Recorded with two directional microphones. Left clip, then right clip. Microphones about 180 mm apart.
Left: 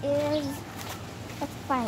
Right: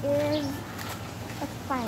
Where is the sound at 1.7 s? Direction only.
45° left (ahead or behind).